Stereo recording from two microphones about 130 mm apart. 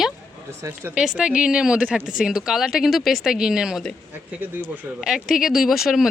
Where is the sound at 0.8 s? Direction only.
20° right (ahead or behind).